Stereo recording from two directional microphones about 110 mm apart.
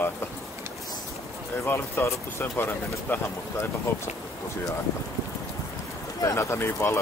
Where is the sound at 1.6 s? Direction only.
25° left (ahead or behind).